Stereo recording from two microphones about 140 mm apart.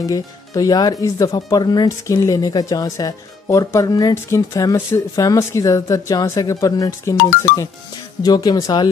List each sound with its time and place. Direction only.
0.0 s speech: 25° left (ahead or behind)